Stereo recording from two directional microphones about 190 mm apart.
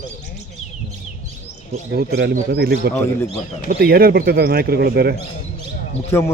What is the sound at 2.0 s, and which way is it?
Speech, 55° right (ahead or behind).